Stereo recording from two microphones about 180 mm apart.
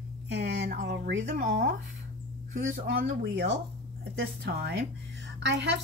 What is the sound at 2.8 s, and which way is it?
Speech, 65° right (ahead or behind).